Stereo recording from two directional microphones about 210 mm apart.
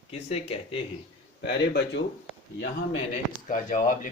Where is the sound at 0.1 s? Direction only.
30° left (ahead or behind).